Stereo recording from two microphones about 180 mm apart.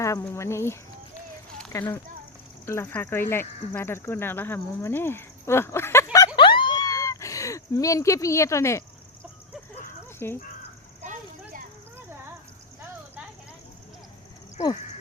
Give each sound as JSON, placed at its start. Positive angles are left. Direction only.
{"t": 0.0, "sound": "speech", "side_deg": 15}
{"t": 6.1, "sound": "a sound", "side_deg": 25}
{"t": 10.2, "sound": "speech", "side_deg": 15}